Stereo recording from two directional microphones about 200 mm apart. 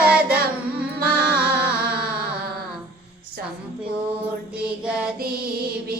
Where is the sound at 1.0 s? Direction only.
50° right (ahead or behind).